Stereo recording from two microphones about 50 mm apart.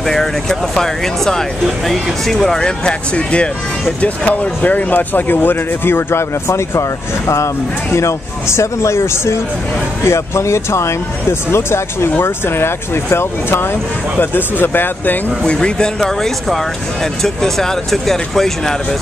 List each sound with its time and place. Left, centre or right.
0.0 s speech: centre
2.8 s speech: left
6.4 s speech: left
15.4 s speech: centre